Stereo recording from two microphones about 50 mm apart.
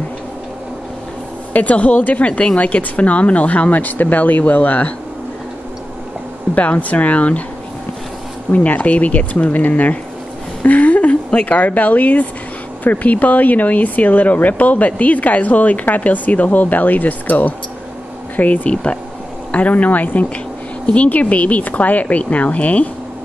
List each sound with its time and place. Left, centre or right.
1.5 s a woman's voice: left
6.5 s a woman's voice: left
8.5 s speech: left
10.6 s a sound: left
11.3 s a woman's voice: left